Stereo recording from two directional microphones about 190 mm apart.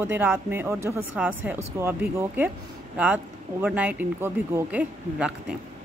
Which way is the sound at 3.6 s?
10° right (ahead or behind).